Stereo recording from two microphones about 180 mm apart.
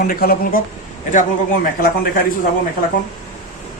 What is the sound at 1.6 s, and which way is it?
Speech, 55° left (ahead or behind).